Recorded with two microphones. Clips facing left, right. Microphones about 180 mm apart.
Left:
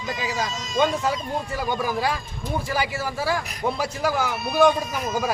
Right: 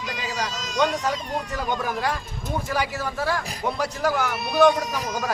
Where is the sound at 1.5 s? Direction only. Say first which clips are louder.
Left 2 dB; 10° left (ahead or behind).